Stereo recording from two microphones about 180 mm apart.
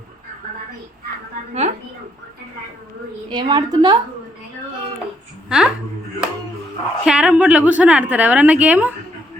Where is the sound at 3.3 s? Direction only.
25° right (ahead or behind).